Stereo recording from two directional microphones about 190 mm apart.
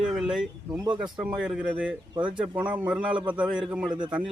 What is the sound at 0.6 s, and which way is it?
Speech, 20° right (ahead or behind).